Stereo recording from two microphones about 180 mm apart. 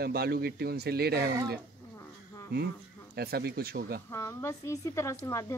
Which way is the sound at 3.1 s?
60° right (ahead or behind).